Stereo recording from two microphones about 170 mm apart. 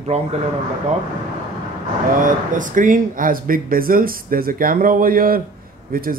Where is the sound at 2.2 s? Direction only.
50° right (ahead or behind).